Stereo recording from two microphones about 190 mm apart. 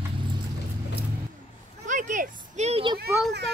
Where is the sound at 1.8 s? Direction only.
40° right (ahead or behind).